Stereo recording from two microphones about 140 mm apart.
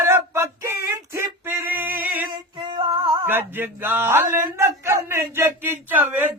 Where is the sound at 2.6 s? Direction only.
35° right (ahead or behind).